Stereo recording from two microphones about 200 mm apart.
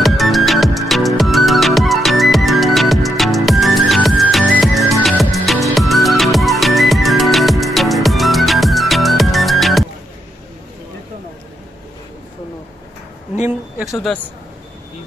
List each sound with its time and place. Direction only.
0.0 s music: centre (ahead or behind)
13.7 s speech: centre (ahead or behind)